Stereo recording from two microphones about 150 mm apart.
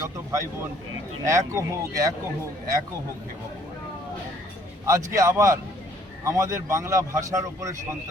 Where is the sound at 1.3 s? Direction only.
20° right (ahead or behind).